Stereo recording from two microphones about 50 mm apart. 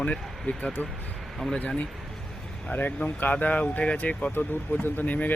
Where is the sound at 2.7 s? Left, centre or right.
Left.